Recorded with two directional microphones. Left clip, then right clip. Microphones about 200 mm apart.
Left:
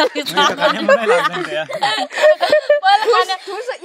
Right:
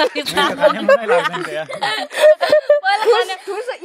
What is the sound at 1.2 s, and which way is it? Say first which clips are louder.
Speech: left 2 dB; 15° right (ahead or behind).